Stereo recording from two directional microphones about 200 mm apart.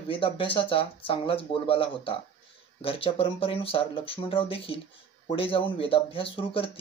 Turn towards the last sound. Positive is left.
turn(degrees=25)  # may be behind; listen again after turning